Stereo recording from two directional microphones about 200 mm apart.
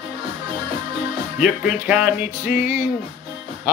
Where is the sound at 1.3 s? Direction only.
5° right (ahead or behind).